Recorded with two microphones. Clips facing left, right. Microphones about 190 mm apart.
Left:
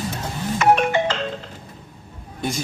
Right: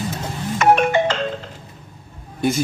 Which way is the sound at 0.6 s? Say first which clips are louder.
Right 2 dB; 50° right (ahead or behind).